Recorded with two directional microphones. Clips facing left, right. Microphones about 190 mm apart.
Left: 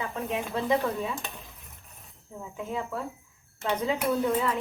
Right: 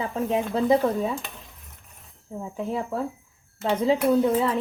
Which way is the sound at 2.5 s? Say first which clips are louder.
Right 5 dB; 35° right (ahead or behind).